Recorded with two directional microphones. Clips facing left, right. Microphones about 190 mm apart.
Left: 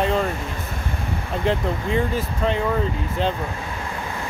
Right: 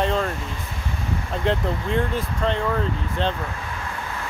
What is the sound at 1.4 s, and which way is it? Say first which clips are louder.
Speech: left 1 dB; centre (ahead or behind).